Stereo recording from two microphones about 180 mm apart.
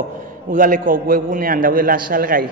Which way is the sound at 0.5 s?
50° right (ahead or behind).